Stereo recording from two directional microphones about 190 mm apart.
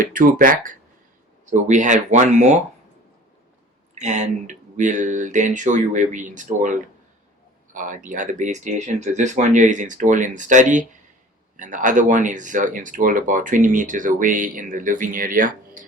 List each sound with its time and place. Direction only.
0.0 s speech: 45° right (ahead or behind)
3.9 s speech: 40° right (ahead or behind)